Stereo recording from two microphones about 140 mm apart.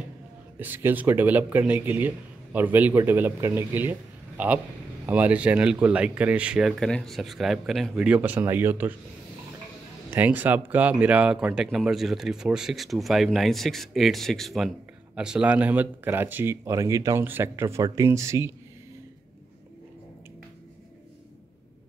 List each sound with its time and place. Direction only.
0.6 s speech: 15° right (ahead or behind)
10.1 s speech: 15° right (ahead or behind)